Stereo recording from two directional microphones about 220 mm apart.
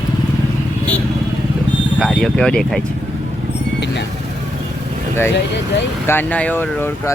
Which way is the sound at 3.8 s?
50° left (ahead or behind).